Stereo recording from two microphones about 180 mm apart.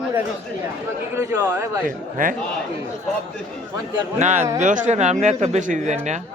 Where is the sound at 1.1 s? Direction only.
15° right (ahead or behind).